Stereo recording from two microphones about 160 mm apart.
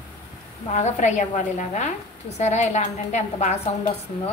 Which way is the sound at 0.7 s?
45° left (ahead or behind).